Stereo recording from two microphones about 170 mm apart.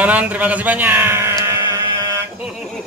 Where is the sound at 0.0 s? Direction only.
10° right (ahead or behind).